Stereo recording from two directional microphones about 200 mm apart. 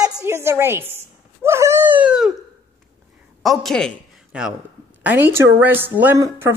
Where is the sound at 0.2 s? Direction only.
10° right (ahead or behind).